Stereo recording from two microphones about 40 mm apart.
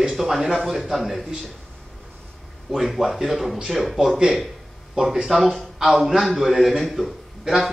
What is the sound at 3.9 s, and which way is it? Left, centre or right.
A man's voice, centre.